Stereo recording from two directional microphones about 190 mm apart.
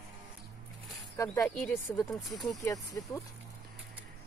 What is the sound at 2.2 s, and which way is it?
Speech, centre (ahead or behind).